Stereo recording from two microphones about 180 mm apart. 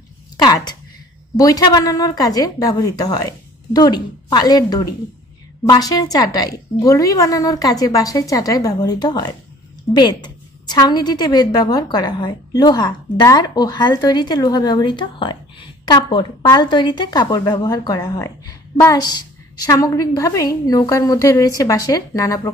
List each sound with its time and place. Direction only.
0.4 s a woman's voice: 20° left (ahead or behind)